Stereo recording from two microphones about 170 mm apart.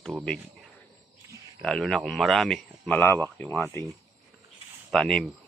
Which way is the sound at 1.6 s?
5° left (ahead or behind).